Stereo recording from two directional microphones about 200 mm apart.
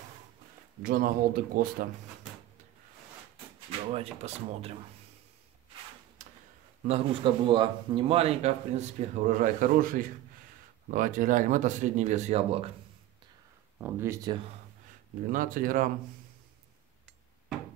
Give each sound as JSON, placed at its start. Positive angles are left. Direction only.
{"t": 0.8, "sound": "speech", "side_deg": -45}
{"t": 3.9, "sound": "a man's voice", "side_deg": -30}
{"t": 6.2, "sound": "a sound", "side_deg": -35}
{"t": 6.9, "sound": "a man's voice", "side_deg": -25}
{"t": 13.7, "sound": "speech", "side_deg": -10}
{"t": 15.3, "sound": "speech", "side_deg": -45}